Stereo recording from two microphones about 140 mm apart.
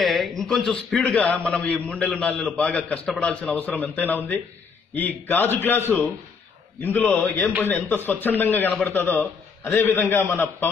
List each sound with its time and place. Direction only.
0.0 s a man's voice: centre (ahead or behind)